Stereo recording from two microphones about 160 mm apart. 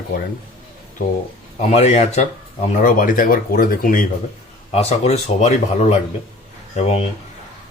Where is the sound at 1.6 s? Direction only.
45° left (ahead or behind); by 4.0 s 60° left (ahead or behind).